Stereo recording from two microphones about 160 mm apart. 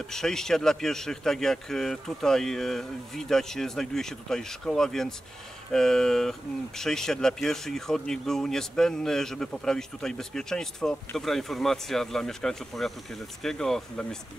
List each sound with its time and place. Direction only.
0.0 s a man's voice: 5° left (ahead or behind)